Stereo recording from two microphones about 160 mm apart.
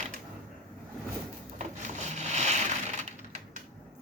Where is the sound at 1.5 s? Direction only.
45° right (ahead or behind).